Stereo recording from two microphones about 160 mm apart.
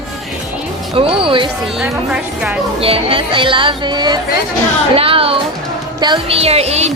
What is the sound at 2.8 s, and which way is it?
Speech, 35° right (ahead or behind).